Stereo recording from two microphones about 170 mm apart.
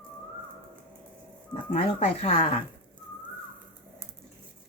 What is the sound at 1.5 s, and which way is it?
Speech, 40° left (ahead or behind).